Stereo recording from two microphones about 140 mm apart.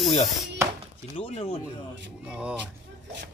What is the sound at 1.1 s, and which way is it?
Speech, 45° left (ahead or behind).